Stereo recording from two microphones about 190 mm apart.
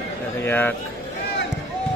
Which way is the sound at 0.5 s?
10° left (ahead or behind).